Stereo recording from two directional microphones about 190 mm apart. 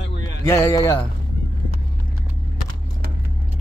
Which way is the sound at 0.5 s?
15° left (ahead or behind).